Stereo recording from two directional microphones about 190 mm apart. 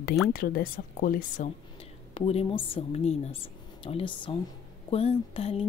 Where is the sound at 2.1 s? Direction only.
30° left (ahead or behind).